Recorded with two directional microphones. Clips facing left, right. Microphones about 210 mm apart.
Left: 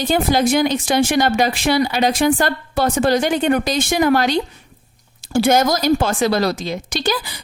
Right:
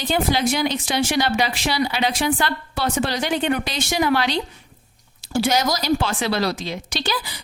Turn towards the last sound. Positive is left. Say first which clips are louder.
# left 5 dB
turn(degrees=45)  # may be behind; listen again after turning